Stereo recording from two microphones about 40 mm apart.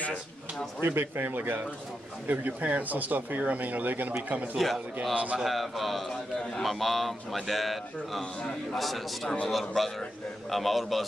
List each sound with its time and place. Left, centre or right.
0.7 s a man's voice: right
5.4 s a man's voice: centre
8.2 s a man's voice: centre
8.7 s a man's voice: centre